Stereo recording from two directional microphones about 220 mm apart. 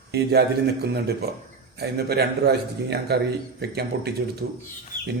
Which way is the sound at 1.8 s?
45° right (ahead or behind).